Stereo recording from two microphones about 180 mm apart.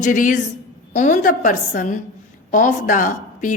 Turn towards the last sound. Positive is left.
turn(degrees=45)  # may be behind; listen again after turning